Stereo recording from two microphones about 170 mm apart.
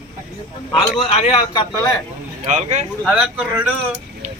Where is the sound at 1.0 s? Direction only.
40° left (ahead or behind).